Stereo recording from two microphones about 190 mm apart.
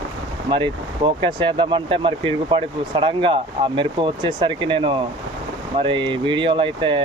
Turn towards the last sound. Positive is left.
turn(degrees=-25)  # may be behind; listen again after turning